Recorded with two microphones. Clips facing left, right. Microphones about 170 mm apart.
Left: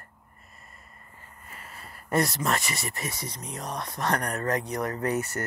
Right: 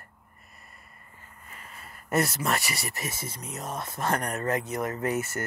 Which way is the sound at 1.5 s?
Centre (ahead or behind).